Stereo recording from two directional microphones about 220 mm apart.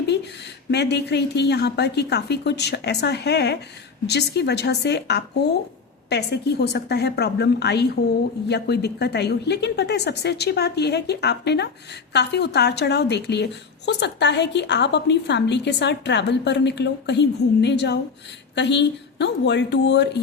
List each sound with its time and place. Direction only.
0.7 s a woman's voice: 50° left (ahead or behind)